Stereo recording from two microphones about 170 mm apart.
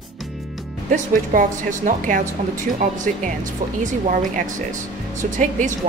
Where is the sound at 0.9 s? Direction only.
50° right (ahead or behind).